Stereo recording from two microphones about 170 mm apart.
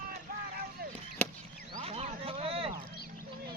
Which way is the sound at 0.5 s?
60° right (ahead or behind).